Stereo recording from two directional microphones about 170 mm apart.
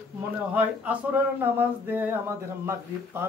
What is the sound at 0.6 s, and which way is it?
Speech, 10° right (ahead or behind).